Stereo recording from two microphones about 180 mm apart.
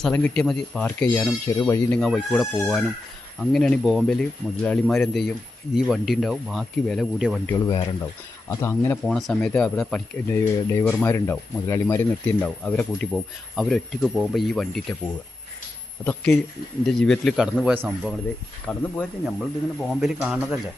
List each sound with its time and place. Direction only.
0.0 s speech: 5° left (ahead or behind)
2.0 s speech: centre (ahead or behind)
7.7 s speech: 25° left (ahead or behind)
8.4 s speech: 15° left (ahead or behind)
9.0 s speech: centre (ahead or behind)